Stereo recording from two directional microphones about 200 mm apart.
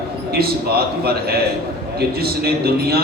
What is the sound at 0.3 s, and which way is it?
A man's voice, 50° right (ahead or behind).